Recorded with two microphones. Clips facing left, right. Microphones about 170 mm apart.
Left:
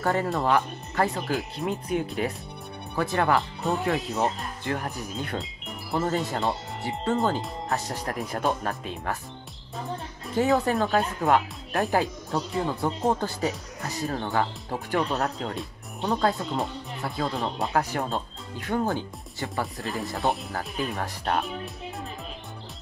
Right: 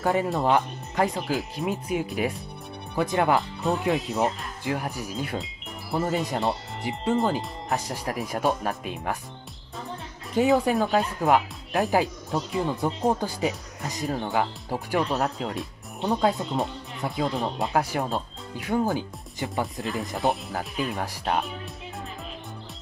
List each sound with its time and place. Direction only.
0.0 s speech: 15° right (ahead or behind)
1.3 s speech: 5° right (ahead or behind)
10.6 s speech: 10° right (ahead or behind)
19.4 s speech: 20° right (ahead or behind)
20.2 s speech: centre (ahead or behind)
20.5 s speech: 15° right (ahead or behind)